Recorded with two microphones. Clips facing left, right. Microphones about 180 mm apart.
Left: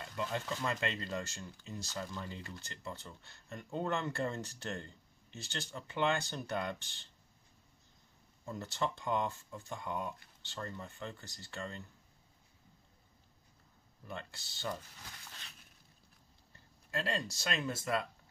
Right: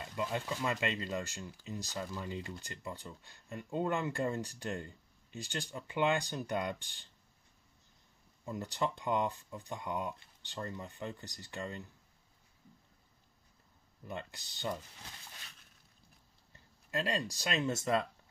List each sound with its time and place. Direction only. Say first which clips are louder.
0.0 s speech: right 2 dB; 15° right (ahead or behind)
8.5 s speech: right 2 dB; 15° right (ahead or behind)
14.0 s speech: right 3 dB; 15° right (ahead or behind)
16.9 s speech: right 2 dB; 15° right (ahead or behind)